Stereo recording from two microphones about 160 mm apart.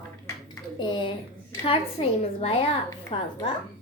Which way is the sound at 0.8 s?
30° left (ahead or behind).